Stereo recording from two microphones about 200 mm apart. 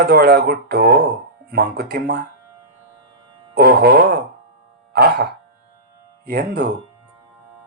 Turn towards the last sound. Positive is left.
turn(degrees=-50)  # may be behind; listen again after turning